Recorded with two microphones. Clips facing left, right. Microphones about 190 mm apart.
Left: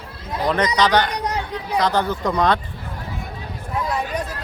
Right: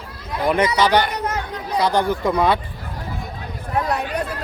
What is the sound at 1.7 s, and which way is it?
Speech, 10° right (ahead or behind).